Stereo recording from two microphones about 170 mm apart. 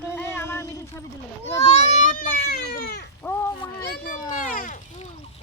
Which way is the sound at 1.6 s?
40° left (ahead or behind).